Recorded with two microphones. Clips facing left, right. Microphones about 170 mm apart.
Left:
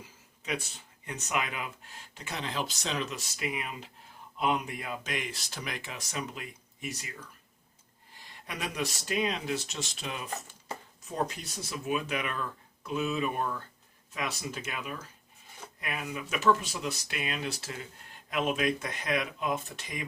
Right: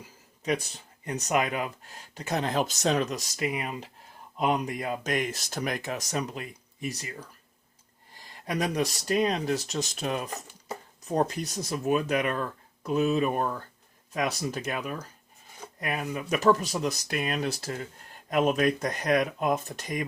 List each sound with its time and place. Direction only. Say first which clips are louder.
0.4 s speech: right 7 dB; 40° right (ahead or behind)
8.4 s speech: right 7 dB; 40° right (ahead or behind)